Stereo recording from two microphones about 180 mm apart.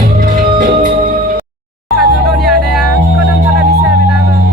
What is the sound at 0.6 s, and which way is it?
Music, 55° right (ahead or behind).